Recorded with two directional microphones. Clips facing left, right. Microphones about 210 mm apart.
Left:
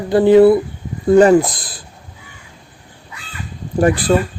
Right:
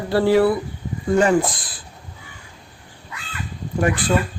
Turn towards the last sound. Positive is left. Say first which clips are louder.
# left 6 dB
turn(degrees=35)  # may be behind; listen again after turning